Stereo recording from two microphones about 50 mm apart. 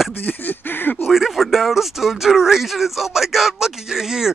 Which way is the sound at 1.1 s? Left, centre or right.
Centre.